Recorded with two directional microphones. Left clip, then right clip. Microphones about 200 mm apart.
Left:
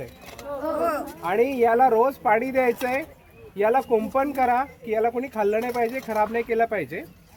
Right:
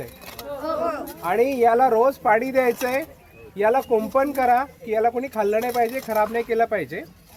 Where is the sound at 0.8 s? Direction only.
55° left (ahead or behind).